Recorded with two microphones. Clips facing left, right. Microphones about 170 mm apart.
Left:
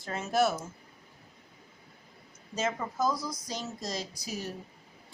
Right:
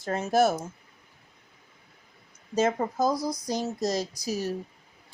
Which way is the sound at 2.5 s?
40° right (ahead or behind).